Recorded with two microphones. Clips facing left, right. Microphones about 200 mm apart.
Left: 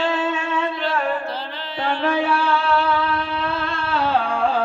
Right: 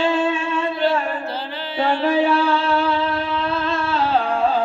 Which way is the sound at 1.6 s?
5° right (ahead or behind).